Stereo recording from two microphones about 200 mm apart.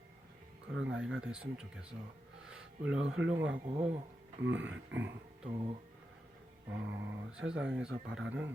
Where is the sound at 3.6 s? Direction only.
30° right (ahead or behind).